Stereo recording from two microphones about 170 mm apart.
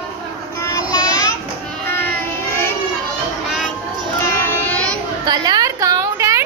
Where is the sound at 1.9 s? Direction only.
10° left (ahead or behind).